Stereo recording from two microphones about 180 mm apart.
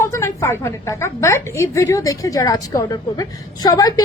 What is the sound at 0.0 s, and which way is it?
A woman's voice, 15° left (ahead or behind).